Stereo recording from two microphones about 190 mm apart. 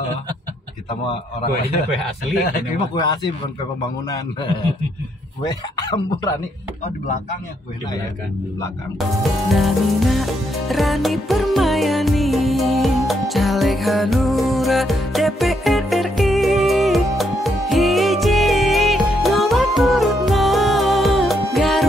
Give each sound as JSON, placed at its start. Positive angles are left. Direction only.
{"t": 5.5, "sound": "speech", "side_deg": 20}
{"t": 9.5, "sound": "music", "side_deg": 0}